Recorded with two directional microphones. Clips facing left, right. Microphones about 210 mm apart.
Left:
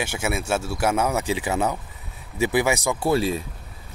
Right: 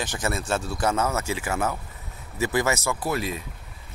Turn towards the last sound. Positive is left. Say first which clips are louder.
# left 6 dB
turn(degrees=30)  # may be behind; listen again after turning